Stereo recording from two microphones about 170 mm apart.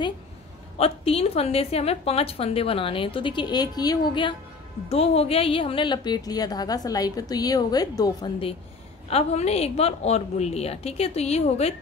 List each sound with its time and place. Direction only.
0.7 s a woman's voice: 35° left (ahead or behind)